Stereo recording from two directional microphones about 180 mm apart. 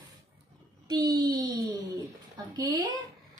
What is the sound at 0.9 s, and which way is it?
A woman's voice, 20° right (ahead or behind).